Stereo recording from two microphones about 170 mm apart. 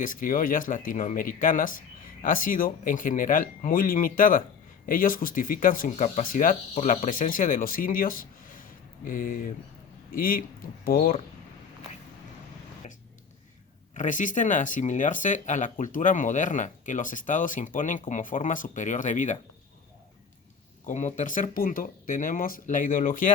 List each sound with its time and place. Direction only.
0.0 s speech: 55° left (ahead or behind)
13.9 s speech: 45° left (ahead or behind)
20.8 s speech: 45° left (ahead or behind)